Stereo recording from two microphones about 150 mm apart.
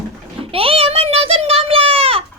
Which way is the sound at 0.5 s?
40° right (ahead or behind).